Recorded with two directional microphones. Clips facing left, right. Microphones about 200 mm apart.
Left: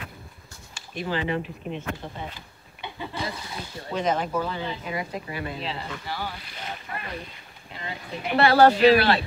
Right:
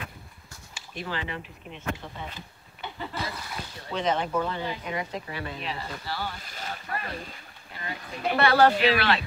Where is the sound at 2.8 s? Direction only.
15° left (ahead or behind).